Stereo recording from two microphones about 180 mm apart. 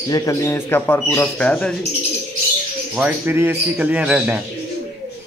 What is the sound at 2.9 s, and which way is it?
Speech, 10° right (ahead or behind).